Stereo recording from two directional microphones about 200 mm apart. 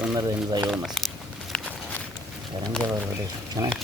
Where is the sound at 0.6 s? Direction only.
5° right (ahead or behind).